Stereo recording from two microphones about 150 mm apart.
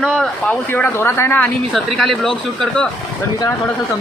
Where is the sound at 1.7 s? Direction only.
Centre (ahead or behind).